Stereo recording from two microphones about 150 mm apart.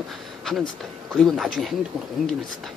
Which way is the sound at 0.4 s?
Centre (ahead or behind).